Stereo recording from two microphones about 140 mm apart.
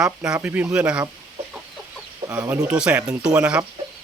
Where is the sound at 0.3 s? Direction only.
10° right (ahead or behind).